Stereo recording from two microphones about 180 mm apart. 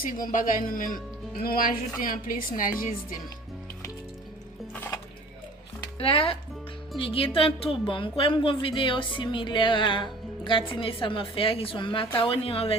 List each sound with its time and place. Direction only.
0.0 s speech: 50° left (ahead or behind)
4.7 s music: 10° left (ahead or behind)
6.0 s a woman's voice: 30° left (ahead or behind)